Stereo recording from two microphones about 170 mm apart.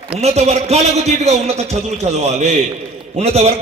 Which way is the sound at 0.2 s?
40° right (ahead or behind).